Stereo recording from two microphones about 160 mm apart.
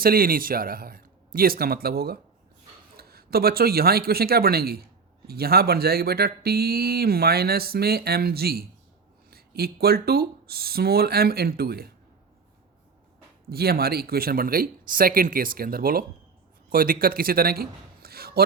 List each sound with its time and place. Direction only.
0.0 s speech: 65° right (ahead or behind)
13.5 s a man's voice: 75° right (ahead or behind)